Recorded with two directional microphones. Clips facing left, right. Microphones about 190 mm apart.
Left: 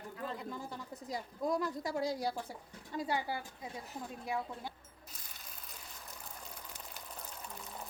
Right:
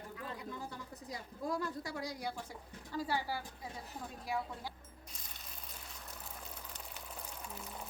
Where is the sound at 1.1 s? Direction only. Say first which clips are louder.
Left 4 dB; 20° left (ahead or behind).